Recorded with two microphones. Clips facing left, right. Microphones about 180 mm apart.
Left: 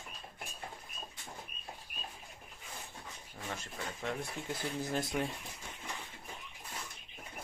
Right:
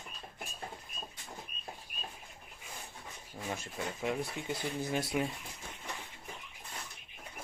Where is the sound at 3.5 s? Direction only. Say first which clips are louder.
Right 4 dB; 10° right (ahead or behind).